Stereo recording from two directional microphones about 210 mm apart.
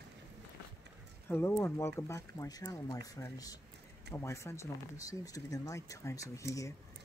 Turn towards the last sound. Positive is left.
turn(degrees=15)  # may be behind; listen again after turning